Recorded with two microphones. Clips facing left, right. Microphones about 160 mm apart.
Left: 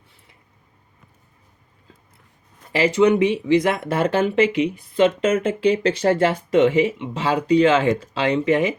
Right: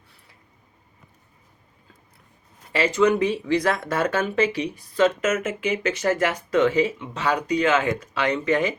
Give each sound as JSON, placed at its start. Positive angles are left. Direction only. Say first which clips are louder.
{"t": 2.7, "sound": "speech", "louder": "left 3 dB", "side_deg": 25}